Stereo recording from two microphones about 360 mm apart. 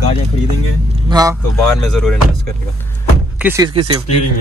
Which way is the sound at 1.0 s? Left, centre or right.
Centre.